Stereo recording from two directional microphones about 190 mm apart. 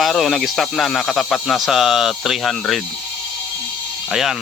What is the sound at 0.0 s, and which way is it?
Speech, centre (ahead or behind).